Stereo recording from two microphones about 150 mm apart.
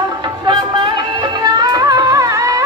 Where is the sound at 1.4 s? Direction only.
25° right (ahead or behind).